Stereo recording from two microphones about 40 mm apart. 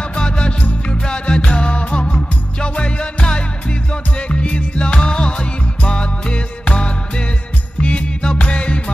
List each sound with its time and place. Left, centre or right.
0.1 s music: left